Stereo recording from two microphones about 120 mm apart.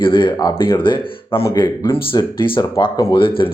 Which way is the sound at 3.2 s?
45° left (ahead or behind).